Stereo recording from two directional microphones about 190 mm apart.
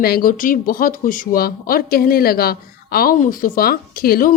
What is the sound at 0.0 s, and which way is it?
Speech, 50° left (ahead or behind).